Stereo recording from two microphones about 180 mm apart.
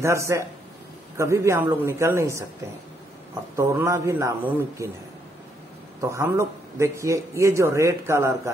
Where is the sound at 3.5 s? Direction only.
15° right (ahead or behind).